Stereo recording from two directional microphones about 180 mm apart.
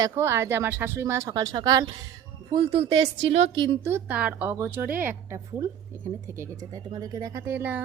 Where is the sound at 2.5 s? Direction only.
30° right (ahead or behind).